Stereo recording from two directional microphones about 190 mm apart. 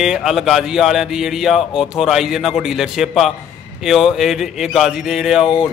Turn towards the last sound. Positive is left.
turn(degrees=-5)  # may be behind; listen again after turning